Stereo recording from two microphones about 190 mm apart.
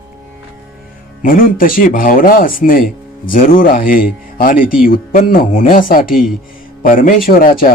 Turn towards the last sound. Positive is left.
turn(degrees=50)  # may be behind; listen again after turning